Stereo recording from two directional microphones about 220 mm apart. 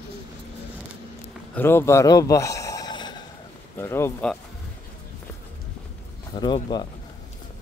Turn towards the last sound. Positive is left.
turn(degrees=20)  # may be behind; listen again after turning